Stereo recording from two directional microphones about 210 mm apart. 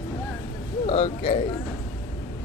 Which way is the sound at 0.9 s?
30° left (ahead or behind).